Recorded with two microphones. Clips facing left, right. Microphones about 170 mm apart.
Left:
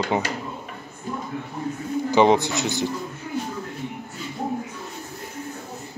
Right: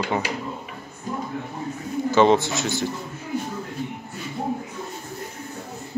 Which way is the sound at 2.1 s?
15° left (ahead or behind).